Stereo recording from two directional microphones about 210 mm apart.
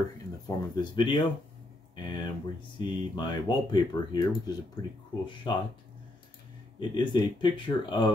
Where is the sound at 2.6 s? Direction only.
20° left (ahead or behind).